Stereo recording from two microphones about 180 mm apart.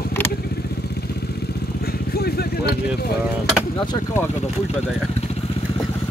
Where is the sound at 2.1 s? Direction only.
60° left (ahead or behind).